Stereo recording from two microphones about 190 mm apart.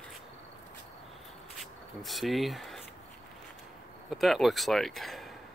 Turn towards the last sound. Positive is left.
turn(degrees=0)  # may be behind; listen again after turning